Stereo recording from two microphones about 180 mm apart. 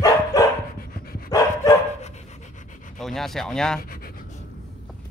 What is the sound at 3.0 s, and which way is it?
Speech, centre (ahead or behind).